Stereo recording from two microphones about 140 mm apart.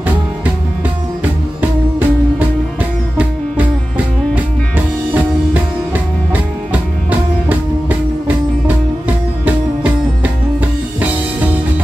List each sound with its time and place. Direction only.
1.6 s music: 15° right (ahead or behind)
6.7 s music: 10° right (ahead or behind)
10.2 s music: 10° right (ahead or behind)